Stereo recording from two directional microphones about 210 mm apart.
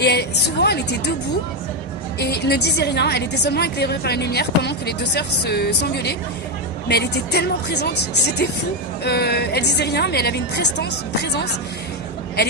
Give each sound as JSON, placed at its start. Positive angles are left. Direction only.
{"t": 0.0, "sound": "a woman's voice", "side_deg": 50}
{"t": 2.1, "sound": "a woman's voice", "side_deg": 50}